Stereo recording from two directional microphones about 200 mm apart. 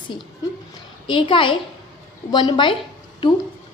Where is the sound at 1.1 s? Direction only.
25° left (ahead or behind).